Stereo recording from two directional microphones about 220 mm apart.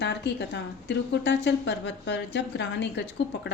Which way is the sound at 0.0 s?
50° left (ahead or behind).